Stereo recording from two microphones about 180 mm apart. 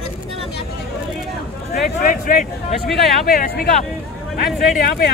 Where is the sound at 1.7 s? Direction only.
50° left (ahead or behind).